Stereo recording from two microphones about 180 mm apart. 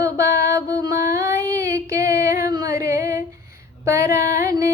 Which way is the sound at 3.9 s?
15° right (ahead or behind).